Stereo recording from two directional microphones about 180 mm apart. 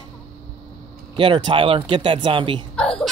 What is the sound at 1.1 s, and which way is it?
Speech, 25° right (ahead or behind).